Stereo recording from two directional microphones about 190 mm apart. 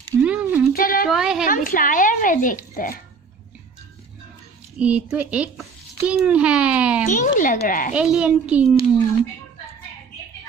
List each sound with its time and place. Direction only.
0.2 s a sound: 5° right (ahead or behind)
0.7 s a sound: 50° left (ahead or behind)
1.0 s a child's voice: centre (ahead or behind)
1.4 s a child's voice: 45° left (ahead or behind)
4.7 s a child's voice: 5° right (ahead or behind)
7.1 s a child's voice: 45° left (ahead or behind)
7.9 s a child's voice: 5° right (ahead or behind)